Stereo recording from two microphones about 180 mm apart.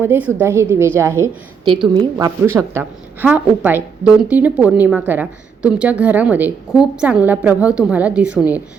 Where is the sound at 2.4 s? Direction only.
15° right (ahead or behind).